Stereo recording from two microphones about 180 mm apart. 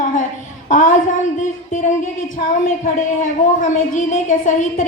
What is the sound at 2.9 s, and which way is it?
Speech, 45° left (ahead or behind).